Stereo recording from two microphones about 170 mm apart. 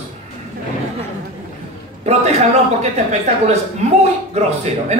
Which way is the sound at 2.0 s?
40° right (ahead or behind).